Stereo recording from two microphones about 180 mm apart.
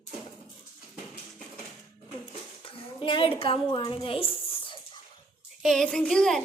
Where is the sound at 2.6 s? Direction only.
30° left (ahead or behind).